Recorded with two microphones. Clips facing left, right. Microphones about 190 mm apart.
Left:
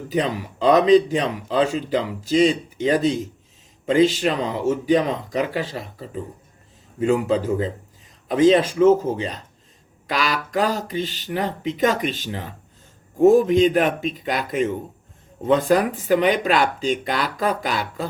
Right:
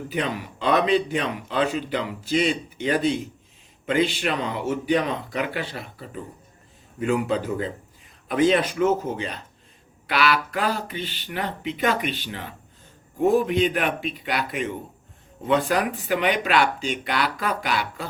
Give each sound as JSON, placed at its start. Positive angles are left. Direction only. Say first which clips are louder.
{"t": 0.1, "sound": "a man's voice", "louder": "left 6 dB", "side_deg": 35}